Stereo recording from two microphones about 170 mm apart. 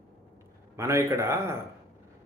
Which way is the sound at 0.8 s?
15° right (ahead or behind).